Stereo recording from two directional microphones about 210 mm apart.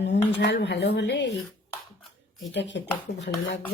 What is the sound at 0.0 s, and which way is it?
Speech, 55° left (ahead or behind).